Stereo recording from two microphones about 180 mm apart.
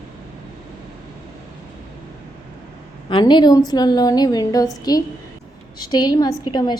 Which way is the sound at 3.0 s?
25° left (ahead or behind).